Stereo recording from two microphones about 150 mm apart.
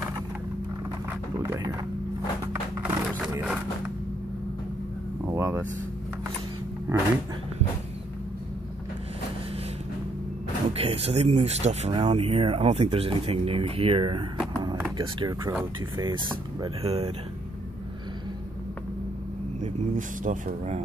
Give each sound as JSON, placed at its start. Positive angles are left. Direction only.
{"t": 1.4, "sound": "speech", "side_deg": -20}
{"t": 3.3, "sound": "a sound", "side_deg": -10}
{"t": 5.3, "sound": "speech", "side_deg": -15}
{"t": 6.9, "sound": "speech", "side_deg": -20}
{"t": 10.7, "sound": "speech", "side_deg": -40}
{"t": 15.0, "sound": "speech", "side_deg": -25}
{"t": 16.6, "sound": "speech", "side_deg": -40}
{"t": 19.6, "sound": "speech", "side_deg": -55}